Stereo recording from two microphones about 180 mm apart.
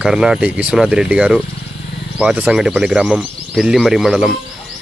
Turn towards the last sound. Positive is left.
turn(degrees=0)  # may be behind; listen again after turning